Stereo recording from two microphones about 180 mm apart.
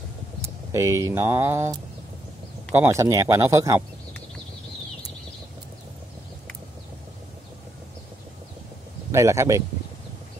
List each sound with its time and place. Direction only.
0.7 s speech: 15° right (ahead or behind)
9.1 s speech: 15° right (ahead or behind)